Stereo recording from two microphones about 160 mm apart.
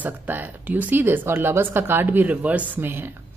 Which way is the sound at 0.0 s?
10° right (ahead or behind).